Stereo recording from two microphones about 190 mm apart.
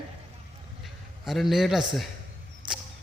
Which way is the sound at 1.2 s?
Centre (ahead or behind).